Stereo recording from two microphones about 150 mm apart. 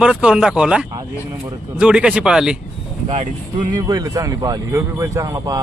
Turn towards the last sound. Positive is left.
turn(degrees=-25)  # may be behind; listen again after turning